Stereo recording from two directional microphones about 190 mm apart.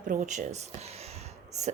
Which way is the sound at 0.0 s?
45° right (ahead or behind).